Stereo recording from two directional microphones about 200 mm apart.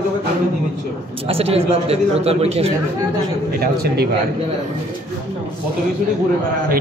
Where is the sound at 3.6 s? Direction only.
50° right (ahead or behind).